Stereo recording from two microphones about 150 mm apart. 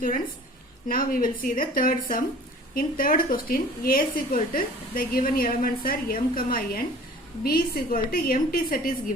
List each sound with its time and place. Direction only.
0.9 s a woman's voice: 70° left (ahead or behind)